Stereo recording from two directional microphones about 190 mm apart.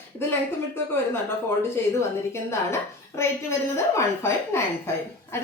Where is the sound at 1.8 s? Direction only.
15° left (ahead or behind).